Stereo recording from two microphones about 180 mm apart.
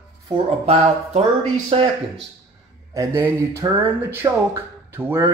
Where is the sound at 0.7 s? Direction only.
35° right (ahead or behind).